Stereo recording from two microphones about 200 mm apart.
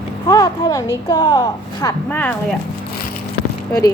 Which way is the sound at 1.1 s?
20° left (ahead or behind).